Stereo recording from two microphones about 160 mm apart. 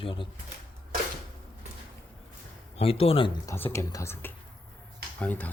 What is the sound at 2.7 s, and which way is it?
Speech, 35° left (ahead or behind).